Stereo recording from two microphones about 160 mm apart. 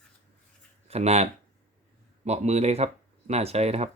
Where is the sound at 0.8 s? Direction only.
40° right (ahead or behind).